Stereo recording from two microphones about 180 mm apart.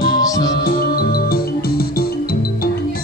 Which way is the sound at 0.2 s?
20° left (ahead or behind).